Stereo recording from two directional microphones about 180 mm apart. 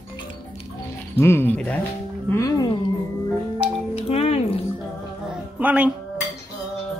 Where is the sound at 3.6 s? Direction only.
35° left (ahead or behind).